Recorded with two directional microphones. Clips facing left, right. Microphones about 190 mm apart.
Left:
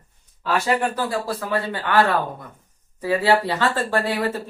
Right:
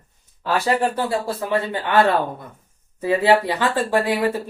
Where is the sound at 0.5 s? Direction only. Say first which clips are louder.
Right 2 dB; 30° right (ahead or behind).